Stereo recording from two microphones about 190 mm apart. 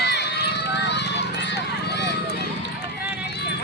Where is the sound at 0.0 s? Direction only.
60° left (ahead or behind).